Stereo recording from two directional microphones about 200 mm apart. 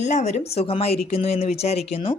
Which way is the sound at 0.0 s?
35° left (ahead or behind).